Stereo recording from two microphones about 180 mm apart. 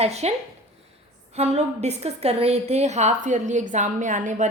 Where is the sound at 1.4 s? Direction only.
40° right (ahead or behind).